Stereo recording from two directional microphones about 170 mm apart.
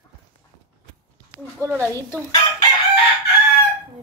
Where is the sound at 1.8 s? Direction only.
10° left (ahead or behind).